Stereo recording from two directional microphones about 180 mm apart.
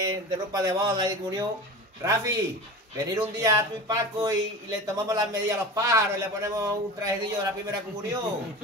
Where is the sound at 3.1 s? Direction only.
15° right (ahead or behind).